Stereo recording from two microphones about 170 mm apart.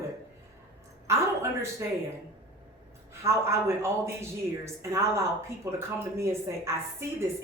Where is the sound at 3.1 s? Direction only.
15° right (ahead or behind).